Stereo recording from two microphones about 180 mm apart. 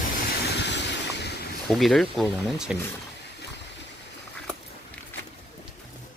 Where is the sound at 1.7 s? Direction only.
Centre (ahead or behind).